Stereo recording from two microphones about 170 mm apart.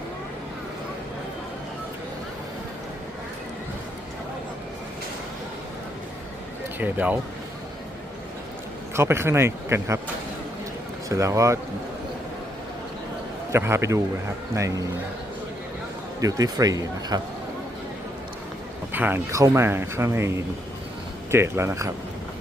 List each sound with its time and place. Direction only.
6.7 s speech: 10° right (ahead or behind)
9.0 s speech: 15° right (ahead or behind)
11.1 s speech: 20° right (ahead or behind)
13.5 s speech: 15° right (ahead or behind)
16.2 s speech: 20° right (ahead or behind)
18.9 s speech: 10° right (ahead or behind)